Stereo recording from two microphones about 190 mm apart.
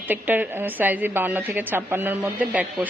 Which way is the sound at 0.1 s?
10° right (ahead or behind).